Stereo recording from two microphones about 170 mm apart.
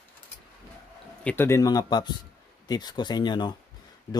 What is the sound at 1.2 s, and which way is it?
Speech, 15° left (ahead or behind).